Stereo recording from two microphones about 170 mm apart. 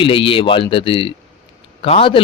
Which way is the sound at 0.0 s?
30° left (ahead or behind).